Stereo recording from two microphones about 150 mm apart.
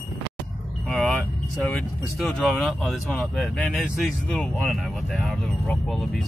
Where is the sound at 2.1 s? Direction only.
Centre (ahead or behind).